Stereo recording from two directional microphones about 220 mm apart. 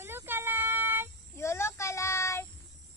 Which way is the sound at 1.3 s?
10° left (ahead or behind).